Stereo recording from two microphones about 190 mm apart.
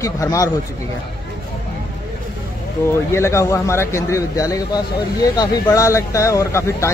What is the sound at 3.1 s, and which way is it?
Speech, 15° left (ahead or behind).